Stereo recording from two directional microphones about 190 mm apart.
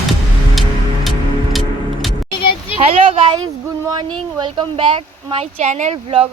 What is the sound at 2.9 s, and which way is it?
Speech, 30° right (ahead or behind).